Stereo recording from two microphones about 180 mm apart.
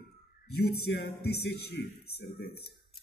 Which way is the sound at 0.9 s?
65° left (ahead or behind).